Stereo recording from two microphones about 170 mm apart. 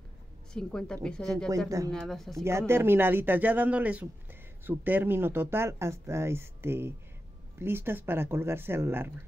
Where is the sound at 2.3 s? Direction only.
15° right (ahead or behind).